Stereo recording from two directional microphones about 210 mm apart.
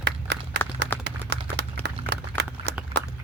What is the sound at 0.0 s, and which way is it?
Run, 55° right (ahead or behind).